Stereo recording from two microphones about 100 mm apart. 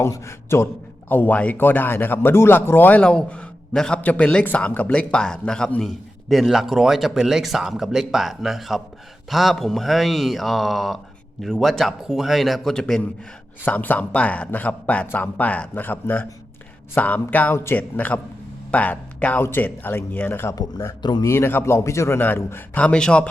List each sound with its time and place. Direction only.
0.0 s a man's voice: 25° left (ahead or behind)
21.0 s speech: 45° left (ahead or behind)
21.2 s speech: 25° left (ahead or behind)
22.8 s a man's voice: 10° left (ahead or behind)